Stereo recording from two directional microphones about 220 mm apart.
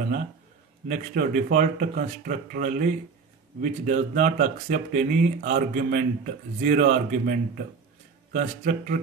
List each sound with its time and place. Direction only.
0.8 s speech: 35° right (ahead or behind)